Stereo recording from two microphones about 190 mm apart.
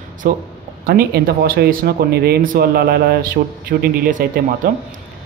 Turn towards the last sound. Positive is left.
turn(degrees=-45)  # may be behind; listen again after turning